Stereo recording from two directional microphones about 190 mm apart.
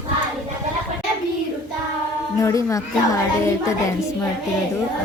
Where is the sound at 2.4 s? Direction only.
15° left (ahead or behind).